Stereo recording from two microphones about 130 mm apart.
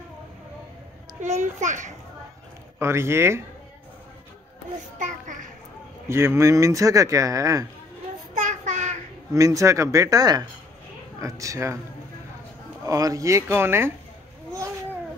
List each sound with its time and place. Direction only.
1.2 s a child's voice: 60° right (ahead or behind)
2.8 s speech: 20° right (ahead or behind)
4.9 s a child's voice: 75° right (ahead or behind)
6.0 s speech: 20° right (ahead or behind)
8.4 s child singing: 65° right (ahead or behind)
9.3 s speech: 25° right (ahead or behind)
12.8 s speech: 25° right (ahead or behind)